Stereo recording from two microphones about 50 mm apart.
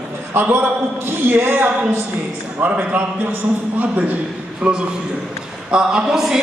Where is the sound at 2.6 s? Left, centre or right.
Right.